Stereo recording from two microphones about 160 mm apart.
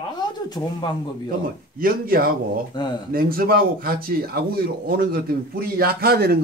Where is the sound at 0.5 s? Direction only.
30° left (ahead or behind).